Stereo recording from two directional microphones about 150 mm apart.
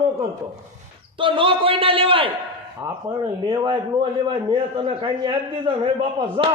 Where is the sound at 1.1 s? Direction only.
35° right (ahead or behind).